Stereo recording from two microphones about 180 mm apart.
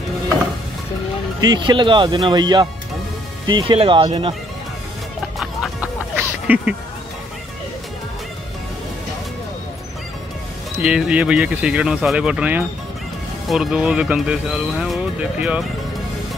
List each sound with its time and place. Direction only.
1.4 s speech: 25° right (ahead or behind)
5.4 s music: 5° right (ahead or behind)
10.8 s speech: 5° right (ahead or behind)